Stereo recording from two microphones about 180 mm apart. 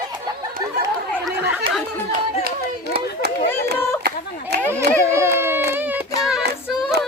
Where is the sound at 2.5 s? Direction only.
60° right (ahead or behind).